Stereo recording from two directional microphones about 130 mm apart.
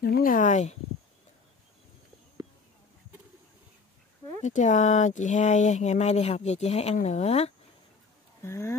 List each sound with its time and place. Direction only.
0.2 s speech: 85° left; by 0.7 s 65° left (ahead or behind)
4.4 s speech: 70° left (ahead or behind)
8.4 s speech: 20° left (ahead or behind)